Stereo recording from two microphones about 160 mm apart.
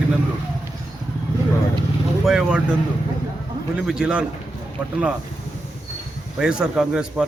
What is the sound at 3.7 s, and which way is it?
Speech, 5° right (ahead or behind).